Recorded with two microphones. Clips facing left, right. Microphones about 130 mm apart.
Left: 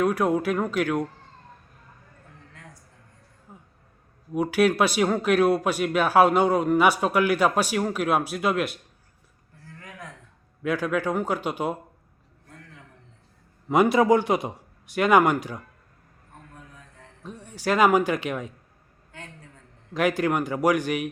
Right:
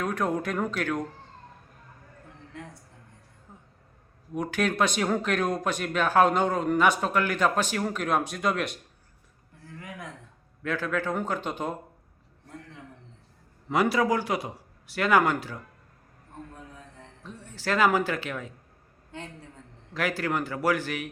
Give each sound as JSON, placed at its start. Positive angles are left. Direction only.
{"t": 0.0, "sound": "speech", "side_deg": 10}
{"t": 3.5, "sound": "a sound", "side_deg": 10}
{"t": 4.4, "sound": "speech", "side_deg": 10}
{"t": 9.6, "sound": "a sound", "side_deg": -15}
{"t": 10.6, "sound": "speech", "side_deg": 15}
{"t": 13.7, "sound": "speech", "side_deg": 20}
{"t": 17.2, "sound": "speech", "side_deg": 15}
{"t": 19.1, "sound": "a sound", "side_deg": -25}
{"t": 19.9, "sound": "speech", "side_deg": 20}